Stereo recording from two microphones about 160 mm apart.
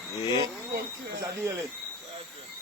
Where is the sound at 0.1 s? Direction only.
25° left (ahead or behind).